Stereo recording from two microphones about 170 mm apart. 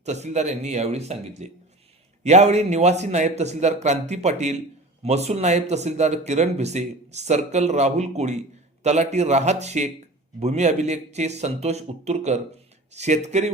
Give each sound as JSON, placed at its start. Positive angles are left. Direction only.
{"t": 0.0, "sound": "speech", "side_deg": -40}